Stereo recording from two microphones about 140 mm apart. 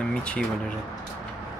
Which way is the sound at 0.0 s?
10° left (ahead or behind).